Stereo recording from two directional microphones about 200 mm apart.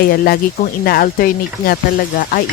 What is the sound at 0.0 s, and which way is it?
Speech, 50° left (ahead or behind).